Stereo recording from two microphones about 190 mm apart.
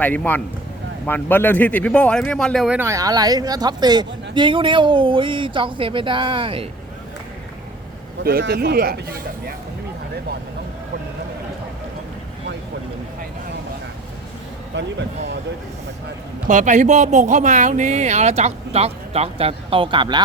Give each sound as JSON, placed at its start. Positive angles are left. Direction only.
{"t": 0.0, "sound": "speech", "side_deg": 10}
{"t": 8.2, "sound": "a man's voice", "side_deg": -55}
{"t": 16.5, "sound": "speech", "side_deg": -40}